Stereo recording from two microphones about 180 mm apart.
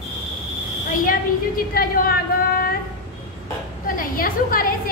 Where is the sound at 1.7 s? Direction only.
55° left (ahead or behind).